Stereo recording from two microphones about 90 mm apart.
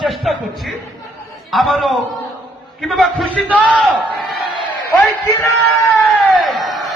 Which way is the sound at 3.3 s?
15° right (ahead or behind).